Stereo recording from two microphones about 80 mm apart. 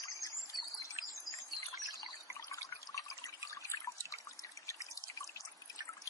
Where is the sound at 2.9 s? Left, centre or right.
Left.